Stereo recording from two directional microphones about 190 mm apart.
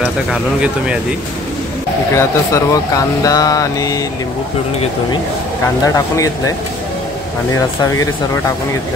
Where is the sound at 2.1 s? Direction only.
15° left (ahead or behind).